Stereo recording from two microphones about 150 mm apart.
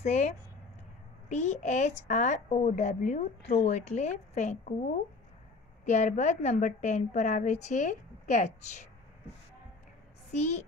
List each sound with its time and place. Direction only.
0.0 s speech: 50° left (ahead or behind)
10.3 s speech: 50° left (ahead or behind)